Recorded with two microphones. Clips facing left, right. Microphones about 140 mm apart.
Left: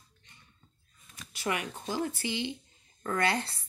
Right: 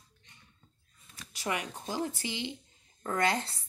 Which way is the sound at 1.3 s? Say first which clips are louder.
Left 1 dB; 35° right (ahead or behind).